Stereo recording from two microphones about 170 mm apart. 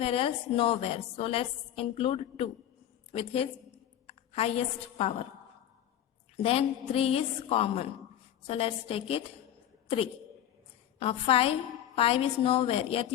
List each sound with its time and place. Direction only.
0.0 s a woman's voice: 35° left (ahead or behind)
6.3 s a woman's voice: 35° left (ahead or behind)
11.0 s a woman's voice: 35° left (ahead or behind)